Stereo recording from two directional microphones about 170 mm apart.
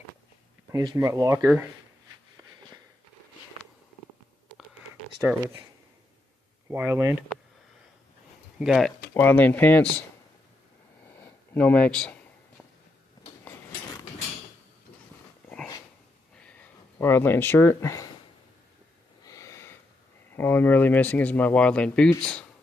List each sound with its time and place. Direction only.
0.7 s speech: 20° right (ahead or behind)
6.7 s speech: 15° right (ahead or behind)
8.5 s speech: centre (ahead or behind)
9.1 s speech: 10° left (ahead or behind)
11.5 s speech: 10° left (ahead or behind)
16.3 s a sound: 10° left (ahead or behind)
19.2 s a sound: 20° left (ahead or behind)
20.3 s speech: 10° left (ahead or behind)